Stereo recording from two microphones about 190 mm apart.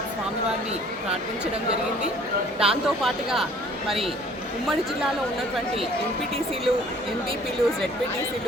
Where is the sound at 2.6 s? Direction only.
Centre (ahead or behind).